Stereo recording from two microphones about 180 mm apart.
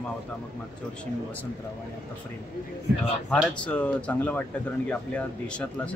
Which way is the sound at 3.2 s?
5° left (ahead or behind).